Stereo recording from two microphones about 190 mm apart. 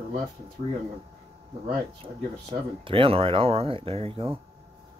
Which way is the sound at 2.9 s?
30° right (ahead or behind).